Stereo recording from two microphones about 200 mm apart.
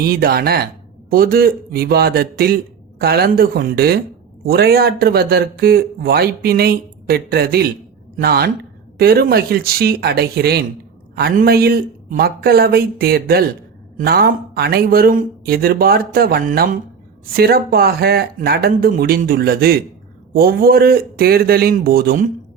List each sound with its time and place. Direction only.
0.0 s speech: 50° right (ahead or behind)